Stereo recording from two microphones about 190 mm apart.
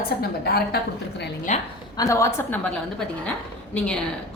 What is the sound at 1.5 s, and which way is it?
Speech, 40° left (ahead or behind).